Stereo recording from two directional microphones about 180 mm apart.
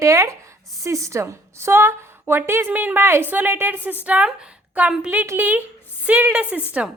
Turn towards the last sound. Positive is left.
turn(degrees=-5)  # may be behind; listen again after turning